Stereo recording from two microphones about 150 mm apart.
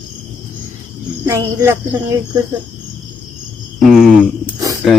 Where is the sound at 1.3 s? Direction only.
20° right (ahead or behind).